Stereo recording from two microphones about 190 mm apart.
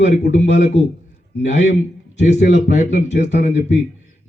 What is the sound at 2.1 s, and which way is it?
A man's voice, 40° left (ahead or behind).